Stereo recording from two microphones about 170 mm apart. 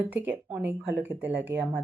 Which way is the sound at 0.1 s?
10° right (ahead or behind).